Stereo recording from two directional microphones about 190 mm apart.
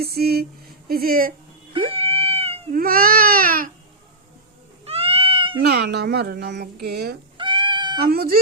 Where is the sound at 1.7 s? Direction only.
30° right (ahead or behind).